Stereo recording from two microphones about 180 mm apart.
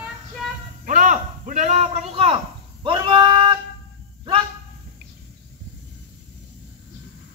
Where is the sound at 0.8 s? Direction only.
45° right (ahead or behind); by 3.5 s 25° right (ahead or behind).